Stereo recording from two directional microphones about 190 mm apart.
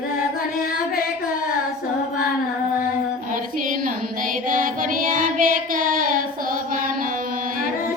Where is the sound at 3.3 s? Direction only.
45° right (ahead or behind).